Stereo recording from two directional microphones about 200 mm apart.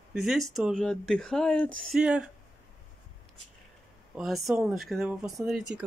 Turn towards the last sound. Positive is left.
turn(degrees=-5)  # may be behind; listen again after turning